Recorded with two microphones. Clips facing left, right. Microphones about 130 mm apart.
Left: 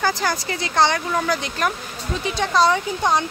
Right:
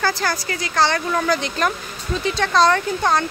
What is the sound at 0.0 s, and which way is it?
Speech, 15° left (ahead or behind).